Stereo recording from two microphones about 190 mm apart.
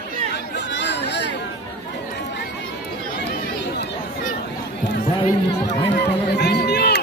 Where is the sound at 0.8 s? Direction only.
65° left (ahead or behind).